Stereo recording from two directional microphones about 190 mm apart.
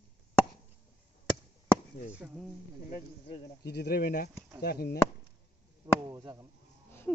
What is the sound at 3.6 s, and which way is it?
Speech, 60° left (ahead or behind).